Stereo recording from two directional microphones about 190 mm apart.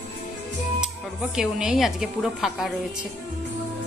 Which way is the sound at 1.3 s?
5° right (ahead or behind).